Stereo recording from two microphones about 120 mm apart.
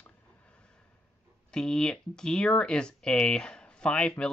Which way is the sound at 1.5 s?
5° left (ahead or behind).